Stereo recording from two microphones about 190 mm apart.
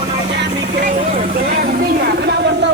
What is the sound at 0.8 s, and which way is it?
Vehicle, 45° right (ahead or behind).